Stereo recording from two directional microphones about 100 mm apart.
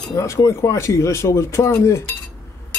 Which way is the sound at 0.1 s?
30° left (ahead or behind).